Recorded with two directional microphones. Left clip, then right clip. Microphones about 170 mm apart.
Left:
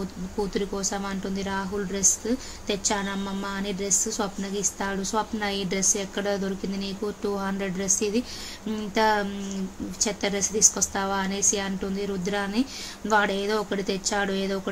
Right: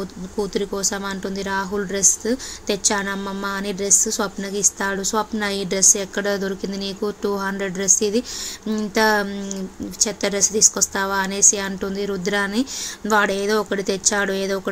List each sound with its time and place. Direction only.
0.4 s a woman's voice: 25° right (ahead or behind)